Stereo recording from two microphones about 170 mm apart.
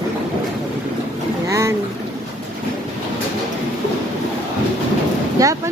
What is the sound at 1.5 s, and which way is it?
Speech, 15° right (ahead or behind).